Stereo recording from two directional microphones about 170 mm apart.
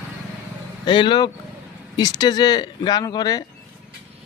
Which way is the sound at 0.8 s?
30° left (ahead or behind).